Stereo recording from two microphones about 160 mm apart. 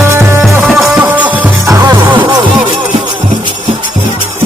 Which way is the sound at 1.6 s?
20° right (ahead or behind).